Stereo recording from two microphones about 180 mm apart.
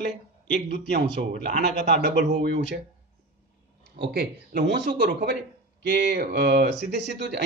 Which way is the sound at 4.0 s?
60° right (ahead or behind).